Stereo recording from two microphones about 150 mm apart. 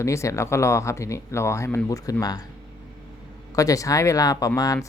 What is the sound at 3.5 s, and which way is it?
Speech, 20° left (ahead or behind).